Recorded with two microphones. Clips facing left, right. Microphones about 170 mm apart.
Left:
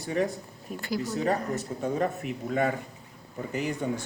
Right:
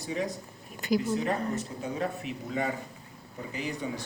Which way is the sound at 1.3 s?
45° left (ahead or behind).